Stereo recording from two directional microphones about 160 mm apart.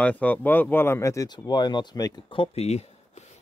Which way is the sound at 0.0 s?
10° left (ahead or behind).